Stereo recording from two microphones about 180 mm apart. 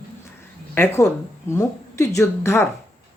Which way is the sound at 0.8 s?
15° left (ahead or behind).